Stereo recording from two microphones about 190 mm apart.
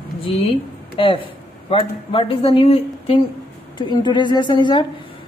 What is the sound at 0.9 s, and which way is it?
A woman's voice, 25° left (ahead or behind).